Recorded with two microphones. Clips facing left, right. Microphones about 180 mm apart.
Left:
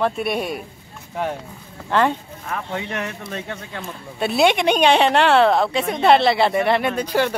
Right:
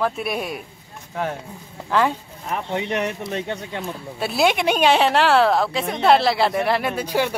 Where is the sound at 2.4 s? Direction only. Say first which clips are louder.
Right 3 dB; 20° right (ahead or behind).